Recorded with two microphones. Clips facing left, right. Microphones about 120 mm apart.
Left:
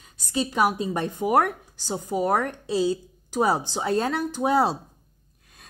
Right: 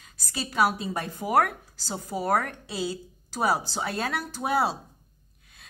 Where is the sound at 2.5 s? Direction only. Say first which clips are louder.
Left 8 dB; 30° left (ahead or behind).